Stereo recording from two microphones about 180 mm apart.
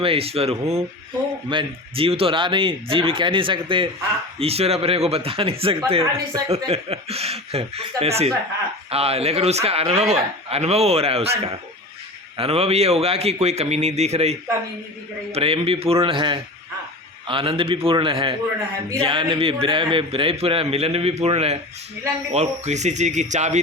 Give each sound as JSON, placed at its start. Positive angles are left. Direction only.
{"t": 0.0, "sound": "a man's voice", "side_deg": -30}